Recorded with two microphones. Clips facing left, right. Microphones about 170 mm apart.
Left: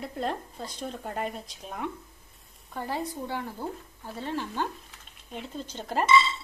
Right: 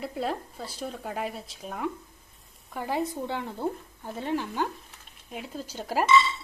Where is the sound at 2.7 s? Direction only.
15° right (ahead or behind).